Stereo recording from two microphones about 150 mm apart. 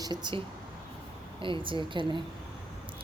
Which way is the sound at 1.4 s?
35° right (ahead or behind).